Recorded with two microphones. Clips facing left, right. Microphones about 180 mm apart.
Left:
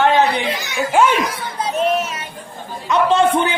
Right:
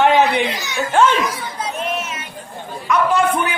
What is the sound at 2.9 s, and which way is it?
Speech, 25° left (ahead or behind).